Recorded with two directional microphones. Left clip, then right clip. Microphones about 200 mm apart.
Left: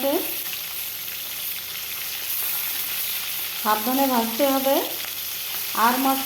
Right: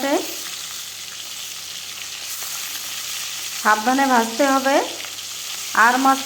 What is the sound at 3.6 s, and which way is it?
Frying, 30° right (ahead or behind).